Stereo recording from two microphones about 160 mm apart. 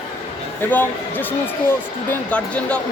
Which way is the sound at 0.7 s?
10° left (ahead or behind).